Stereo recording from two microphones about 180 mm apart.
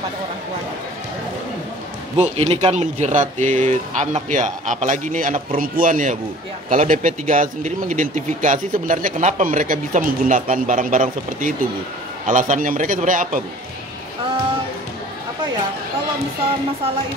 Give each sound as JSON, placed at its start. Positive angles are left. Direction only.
{"t": 2.1, "sound": "a man's voice", "side_deg": -35}